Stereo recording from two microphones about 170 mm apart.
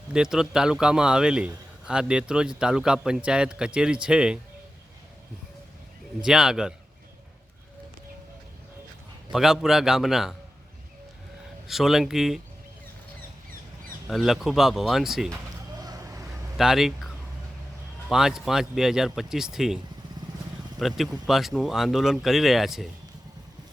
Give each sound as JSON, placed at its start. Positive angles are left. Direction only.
{"t": 0.1, "sound": "a man's voice", "side_deg": -5}
{"t": 6.2, "sound": "a man's voice", "side_deg": -5}
{"t": 9.3, "sound": "a man's voice", "side_deg": 0}
{"t": 11.7, "sound": "a man's voice", "side_deg": 0}
{"t": 14.1, "sound": "a man's voice", "side_deg": 0}
{"t": 15.8, "sound": "vehicle", "side_deg": -20}
{"t": 16.6, "sound": "a man's voice", "side_deg": 0}
{"t": 18.1, "sound": "a man's voice", "side_deg": -5}